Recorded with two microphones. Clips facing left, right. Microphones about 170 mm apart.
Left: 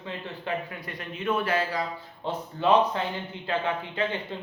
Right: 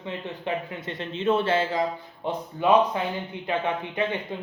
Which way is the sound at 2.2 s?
15° right (ahead or behind).